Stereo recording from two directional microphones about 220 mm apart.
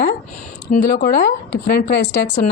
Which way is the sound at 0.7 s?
40° left (ahead or behind).